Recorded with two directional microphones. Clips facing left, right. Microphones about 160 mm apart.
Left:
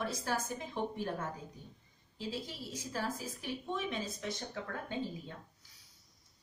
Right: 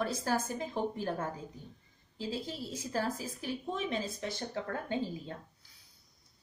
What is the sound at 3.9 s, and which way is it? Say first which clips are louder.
Speech: right 3 dB; 35° right (ahead or behind).